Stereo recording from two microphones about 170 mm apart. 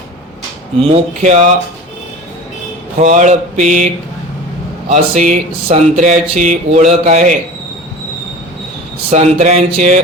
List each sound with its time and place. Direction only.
0.8 s speech: 40° right (ahead or behind)
3.0 s speech: 45° right (ahead or behind)
4.9 s speech: 45° right (ahead or behind)
9.0 s speech: 40° right (ahead or behind)